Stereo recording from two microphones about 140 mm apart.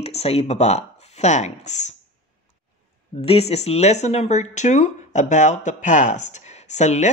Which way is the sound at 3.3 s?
45° left (ahead or behind).